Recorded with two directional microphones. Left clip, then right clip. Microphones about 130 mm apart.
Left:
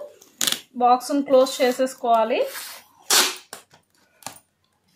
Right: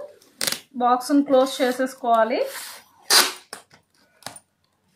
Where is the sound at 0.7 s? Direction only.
20° left (ahead or behind).